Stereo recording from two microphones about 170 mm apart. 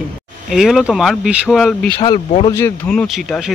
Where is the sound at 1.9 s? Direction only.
30° left (ahead or behind).